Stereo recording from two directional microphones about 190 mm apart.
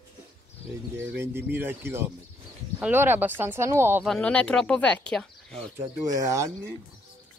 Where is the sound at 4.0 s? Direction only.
5° left (ahead or behind).